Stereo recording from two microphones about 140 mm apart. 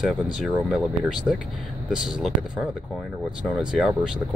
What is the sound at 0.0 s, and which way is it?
Speech, 5° right (ahead or behind).